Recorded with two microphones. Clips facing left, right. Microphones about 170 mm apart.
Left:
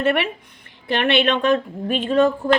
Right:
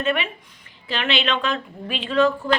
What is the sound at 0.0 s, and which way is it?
A woman's voice, 60° left (ahead or behind).